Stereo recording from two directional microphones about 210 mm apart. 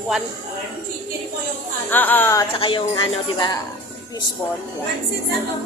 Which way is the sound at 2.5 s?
25° left (ahead or behind).